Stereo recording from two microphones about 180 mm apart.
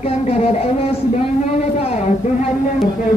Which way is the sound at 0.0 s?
35° left (ahead or behind).